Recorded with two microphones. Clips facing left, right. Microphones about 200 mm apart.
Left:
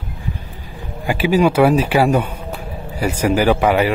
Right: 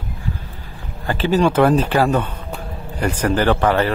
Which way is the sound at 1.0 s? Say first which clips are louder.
Left 2 dB; 10° left (ahead or behind).